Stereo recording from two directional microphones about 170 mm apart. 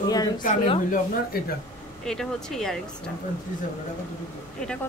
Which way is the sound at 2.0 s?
5° left (ahead or behind).